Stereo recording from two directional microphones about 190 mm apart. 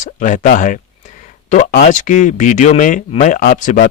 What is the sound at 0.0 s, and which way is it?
Speech, 40° left (ahead or behind).